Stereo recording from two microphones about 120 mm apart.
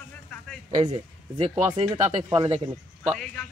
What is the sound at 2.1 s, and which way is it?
Speech, 40° right (ahead or behind).